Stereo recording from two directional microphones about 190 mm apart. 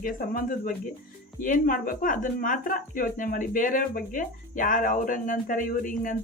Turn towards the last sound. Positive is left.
turn(degrees=45)  # may be behind; listen again after turning